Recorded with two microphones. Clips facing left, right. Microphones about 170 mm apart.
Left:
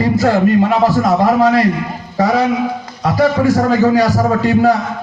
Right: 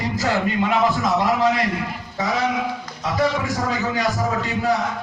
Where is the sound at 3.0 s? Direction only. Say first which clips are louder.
Left 9 dB; 70° left (ahead or behind).